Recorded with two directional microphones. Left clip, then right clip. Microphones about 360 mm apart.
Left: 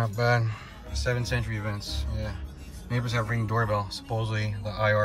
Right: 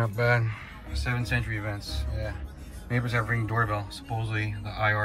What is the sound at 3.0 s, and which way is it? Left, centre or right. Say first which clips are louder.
Speech: right 1 dB; centre.